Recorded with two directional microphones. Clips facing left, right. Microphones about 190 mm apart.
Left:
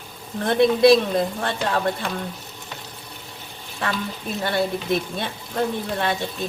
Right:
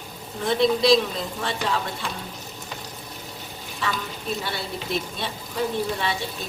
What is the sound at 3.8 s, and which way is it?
A woman's voice, 55° left (ahead or behind).